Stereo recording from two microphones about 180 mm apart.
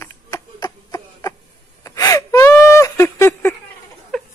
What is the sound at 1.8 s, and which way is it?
Whimper, 20° left (ahead or behind).